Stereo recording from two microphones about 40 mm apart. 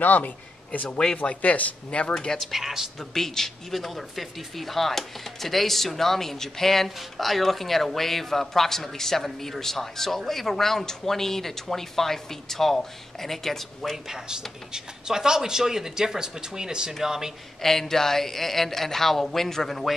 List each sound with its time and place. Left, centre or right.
0.0 s a man's voice: left
0.8 s speech: left
2.1 s speech: centre
2.4 s speech: centre
3.2 s speech: centre
14.0 s speech: centre
17.6 s speech: centre